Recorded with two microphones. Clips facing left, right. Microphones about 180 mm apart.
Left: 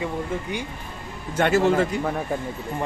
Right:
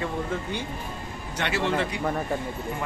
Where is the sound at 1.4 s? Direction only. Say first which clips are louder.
Left 7 dB; 45° left (ahead or behind).